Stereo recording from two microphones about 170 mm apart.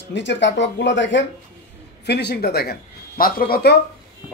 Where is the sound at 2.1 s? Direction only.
80° left; by 3.7 s 60° left (ahead or behind).